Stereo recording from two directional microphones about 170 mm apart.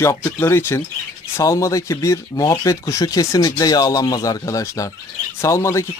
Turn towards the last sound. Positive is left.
turn(degrees=15)  # may be behind; listen again after turning